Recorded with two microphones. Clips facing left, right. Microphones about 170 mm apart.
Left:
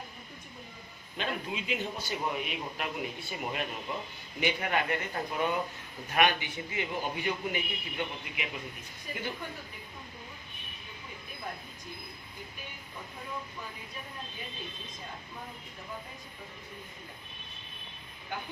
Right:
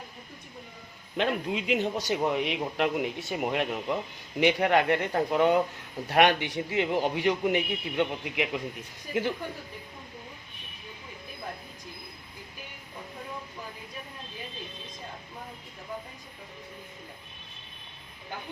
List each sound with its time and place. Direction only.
1.1 s a man's voice: 75° right (ahead or behind)